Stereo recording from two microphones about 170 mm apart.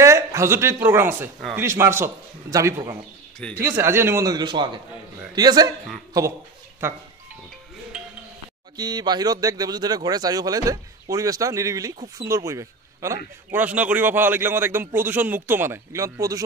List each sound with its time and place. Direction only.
0.0 s a man's voice: 15° right (ahead or behind)
7.9 s chink: 5° right (ahead or behind)
8.7 s a man's voice: 25° right (ahead or behind)